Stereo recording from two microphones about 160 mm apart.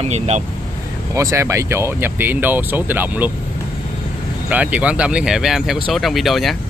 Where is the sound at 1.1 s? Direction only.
20° right (ahead or behind).